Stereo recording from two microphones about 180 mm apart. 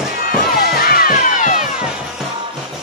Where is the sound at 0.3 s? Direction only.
55° left (ahead or behind).